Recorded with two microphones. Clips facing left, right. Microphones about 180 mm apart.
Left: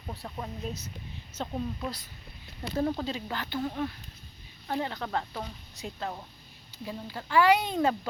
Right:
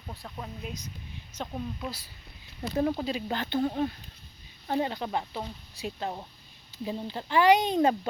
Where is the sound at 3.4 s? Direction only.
30° right (ahead or behind).